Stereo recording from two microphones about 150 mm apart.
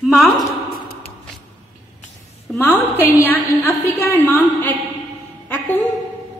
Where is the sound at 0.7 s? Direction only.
90° left.